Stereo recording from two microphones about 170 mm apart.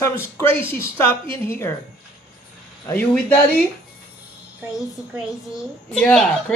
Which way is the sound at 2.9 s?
10° left (ahead or behind).